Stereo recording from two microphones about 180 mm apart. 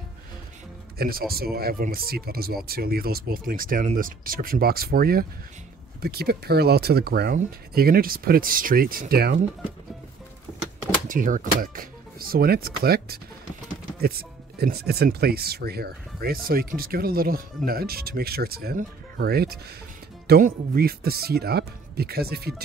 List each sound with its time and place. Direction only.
0.9 s speech: 55° right (ahead or behind)
11.1 s speech: 50° right (ahead or behind)